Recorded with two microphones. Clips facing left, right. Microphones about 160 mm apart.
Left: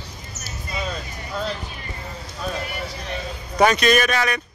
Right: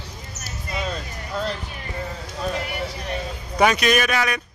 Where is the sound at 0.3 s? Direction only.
45° left (ahead or behind).